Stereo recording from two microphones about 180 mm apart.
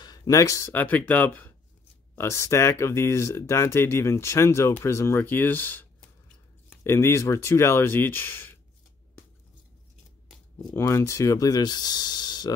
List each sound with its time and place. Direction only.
0.0 s speech: 20° left (ahead or behind)
10.7 s speech: 15° left (ahead or behind)